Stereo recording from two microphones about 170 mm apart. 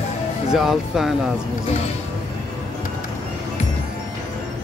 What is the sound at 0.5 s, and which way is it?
Speech, centre (ahead or behind).